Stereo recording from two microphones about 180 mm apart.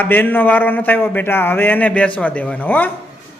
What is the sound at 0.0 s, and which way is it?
A man's voice, 10° left (ahead or behind).